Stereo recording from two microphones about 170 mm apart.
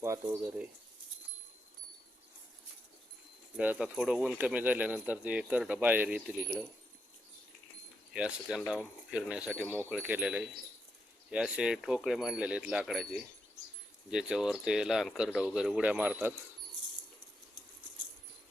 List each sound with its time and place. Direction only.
0.0 s speech: 15° right (ahead or behind)
3.6 s speech: 5° right (ahead or behind)
8.1 s speech: 5° right (ahead or behind)